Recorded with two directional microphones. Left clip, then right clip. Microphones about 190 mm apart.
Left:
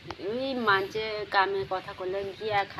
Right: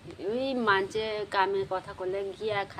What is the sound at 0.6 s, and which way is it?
A woman's voice, 35° right (ahead or behind).